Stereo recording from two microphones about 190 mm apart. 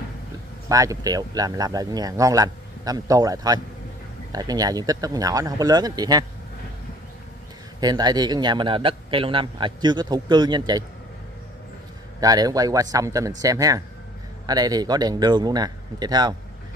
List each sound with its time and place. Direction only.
0.7 s a man's voice: 20° right (ahead or behind)
7.8 s a man's voice: 20° right (ahead or behind)
12.2 s a man's voice: 20° right (ahead or behind)